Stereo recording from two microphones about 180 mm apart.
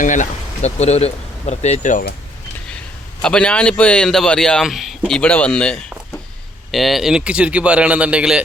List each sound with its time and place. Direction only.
0.0 s speech: 45° left (ahead or behind)
3.2 s a man's voice: 5° left (ahead or behind)